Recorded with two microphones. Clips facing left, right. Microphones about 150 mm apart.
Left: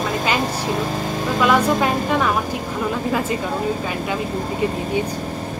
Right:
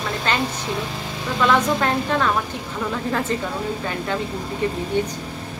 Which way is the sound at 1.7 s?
10° left (ahead or behind).